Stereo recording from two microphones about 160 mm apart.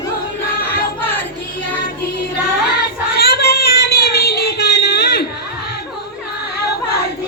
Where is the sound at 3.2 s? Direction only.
80° left.